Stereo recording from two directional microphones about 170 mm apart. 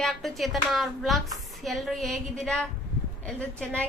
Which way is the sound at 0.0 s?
Centre (ahead or behind).